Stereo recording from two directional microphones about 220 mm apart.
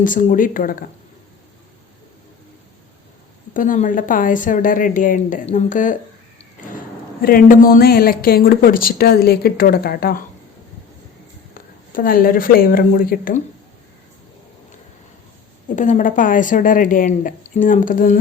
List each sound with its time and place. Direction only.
0.0 s speech: 35° left (ahead or behind)
3.5 s speech: 35° left (ahead or behind)
7.2 s speech: 40° left (ahead or behind)
11.9 s speech: 40° left (ahead or behind)
15.7 s speech: 35° left (ahead or behind)